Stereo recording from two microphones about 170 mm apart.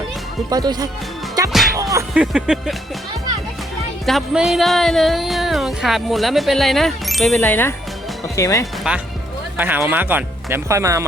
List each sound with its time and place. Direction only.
0.5 s speech: 25° right (ahead or behind)
1.7 s music: 20° right (ahead or behind)
2.1 s speech: 5° right (ahead or behind)
4.0 s speech: centre (ahead or behind); by 8.6 s 20° left (ahead or behind)
8.9 s speech: 5° right (ahead or behind)